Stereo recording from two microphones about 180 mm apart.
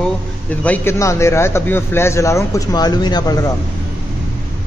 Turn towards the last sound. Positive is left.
turn(degrees=20)  # may be behind; listen again after turning